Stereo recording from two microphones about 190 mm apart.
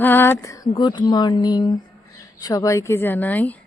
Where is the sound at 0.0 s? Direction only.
10° left (ahead or behind).